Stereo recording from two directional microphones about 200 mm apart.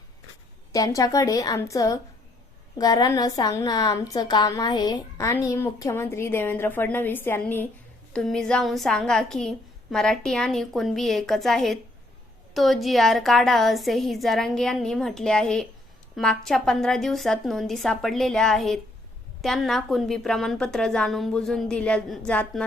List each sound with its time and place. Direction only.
0.7 s a woman's voice: 15° left (ahead or behind)